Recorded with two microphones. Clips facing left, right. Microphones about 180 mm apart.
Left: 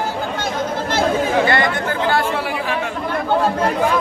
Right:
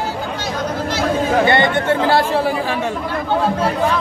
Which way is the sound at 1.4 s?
25° right (ahead or behind).